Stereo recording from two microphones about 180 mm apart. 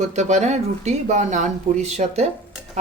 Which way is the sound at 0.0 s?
40° right (ahead or behind).